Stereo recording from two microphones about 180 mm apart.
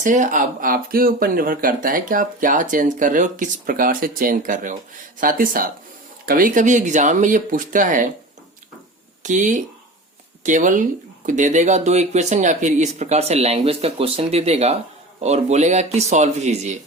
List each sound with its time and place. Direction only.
0.0 s speech: 45° right (ahead or behind)
9.2 s speech: 45° right (ahead or behind)